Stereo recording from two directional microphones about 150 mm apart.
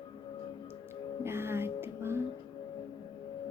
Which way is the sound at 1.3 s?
15° right (ahead or behind).